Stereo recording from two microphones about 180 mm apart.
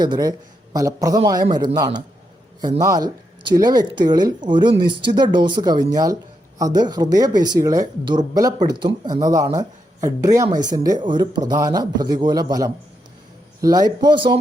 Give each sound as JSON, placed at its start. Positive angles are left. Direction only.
{"t": 0.0, "sound": "speech", "side_deg": -20}